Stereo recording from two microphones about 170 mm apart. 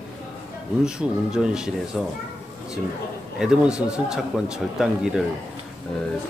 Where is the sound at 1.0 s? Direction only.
5° right (ahead or behind).